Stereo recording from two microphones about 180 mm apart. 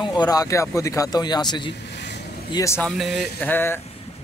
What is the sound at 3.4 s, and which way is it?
Speech, 10° left (ahead or behind).